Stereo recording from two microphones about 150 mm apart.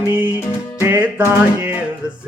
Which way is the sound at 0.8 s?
10° right (ahead or behind).